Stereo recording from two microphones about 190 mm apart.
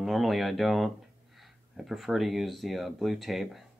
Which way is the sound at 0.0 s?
Centre (ahead or behind).